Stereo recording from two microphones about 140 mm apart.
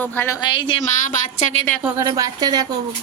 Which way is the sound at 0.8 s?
70° left (ahead or behind).